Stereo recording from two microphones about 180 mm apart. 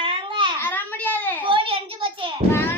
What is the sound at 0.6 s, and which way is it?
Speech, 10° left (ahead or behind).